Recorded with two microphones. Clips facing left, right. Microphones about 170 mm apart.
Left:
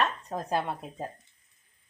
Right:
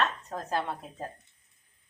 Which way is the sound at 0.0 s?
15° left (ahead or behind).